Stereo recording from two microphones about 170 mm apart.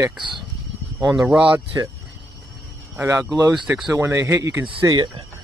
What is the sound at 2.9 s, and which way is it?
Speech, 15° right (ahead or behind).